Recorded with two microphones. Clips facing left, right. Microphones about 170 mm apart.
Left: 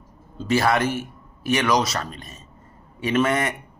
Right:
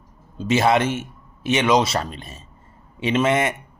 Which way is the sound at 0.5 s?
20° right (ahead or behind).